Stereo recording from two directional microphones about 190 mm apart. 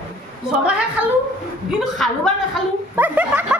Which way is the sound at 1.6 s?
Centre (ahead or behind).